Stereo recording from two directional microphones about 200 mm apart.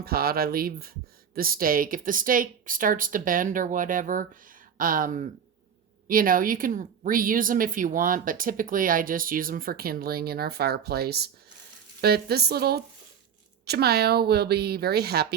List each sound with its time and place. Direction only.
0.0 s speech: 50° right (ahead or behind)